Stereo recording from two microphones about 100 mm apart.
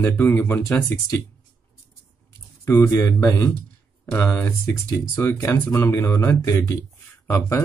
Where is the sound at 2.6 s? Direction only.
30° left (ahead or behind).